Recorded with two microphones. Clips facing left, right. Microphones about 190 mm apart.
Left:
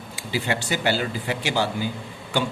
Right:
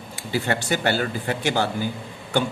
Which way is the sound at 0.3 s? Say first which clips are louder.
Right 2 dB; 50° right (ahead or behind).